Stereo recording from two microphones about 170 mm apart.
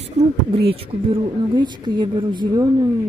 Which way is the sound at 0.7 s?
30° right (ahead or behind).